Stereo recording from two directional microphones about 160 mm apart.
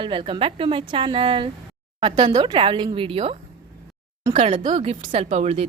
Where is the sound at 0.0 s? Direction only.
35° right (ahead or behind).